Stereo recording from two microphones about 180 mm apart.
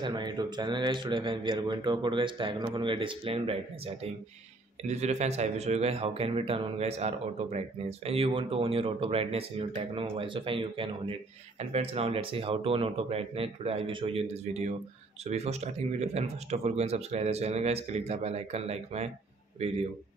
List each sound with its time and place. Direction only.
0.0 s speech: 25° right (ahead or behind)